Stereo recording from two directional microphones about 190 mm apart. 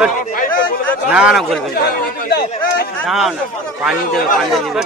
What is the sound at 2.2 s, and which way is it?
Speech, 55° left (ahead or behind).